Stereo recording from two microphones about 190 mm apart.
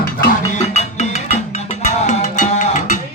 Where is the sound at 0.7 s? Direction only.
35° left (ahead or behind).